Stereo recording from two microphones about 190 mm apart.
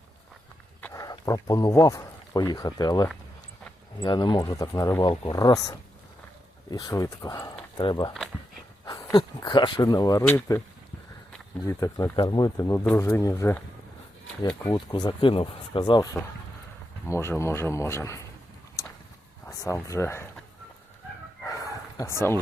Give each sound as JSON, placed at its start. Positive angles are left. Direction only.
{"t": 0.9, "sound": "speech", "side_deg": 20}
{"t": 11.6, "sound": "speech", "side_deg": 15}
{"t": 14.7, "sound": "speech", "side_deg": 20}
{"t": 17.1, "sound": "speech", "side_deg": 15}
{"t": 18.8, "sound": "a sound", "side_deg": 15}
{"t": 19.5, "sound": "speech", "side_deg": 15}
{"t": 21.4, "sound": "a sound", "side_deg": 15}